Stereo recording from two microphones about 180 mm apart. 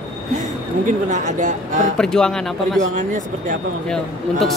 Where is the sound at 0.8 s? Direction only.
45° right (ahead or behind).